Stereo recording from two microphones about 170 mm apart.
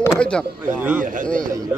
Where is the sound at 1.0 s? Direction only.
50° right (ahead or behind).